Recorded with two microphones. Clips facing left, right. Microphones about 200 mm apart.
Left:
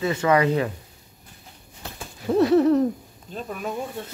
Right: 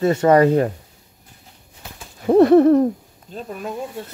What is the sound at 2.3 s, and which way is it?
Hoot, 55° right (ahead or behind).